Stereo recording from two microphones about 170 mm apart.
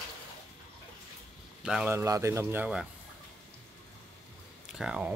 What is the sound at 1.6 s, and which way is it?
Speech, 5° right (ahead or behind).